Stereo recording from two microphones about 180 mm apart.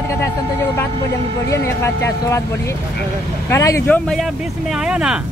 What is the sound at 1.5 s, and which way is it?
Speech, 15° left (ahead or behind).